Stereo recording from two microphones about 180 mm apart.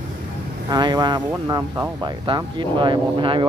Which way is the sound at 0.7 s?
25° right (ahead or behind).